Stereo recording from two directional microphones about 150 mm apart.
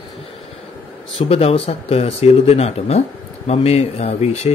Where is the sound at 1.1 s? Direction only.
40° left (ahead or behind).